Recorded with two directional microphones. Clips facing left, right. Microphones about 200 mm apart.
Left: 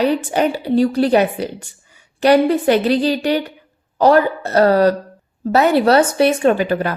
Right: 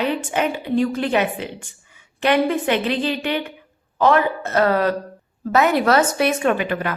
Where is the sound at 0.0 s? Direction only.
35° left (ahead or behind).